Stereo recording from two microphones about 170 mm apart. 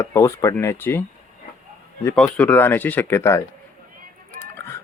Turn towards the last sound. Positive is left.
turn(degrees=15)  # may be behind; listen again after turning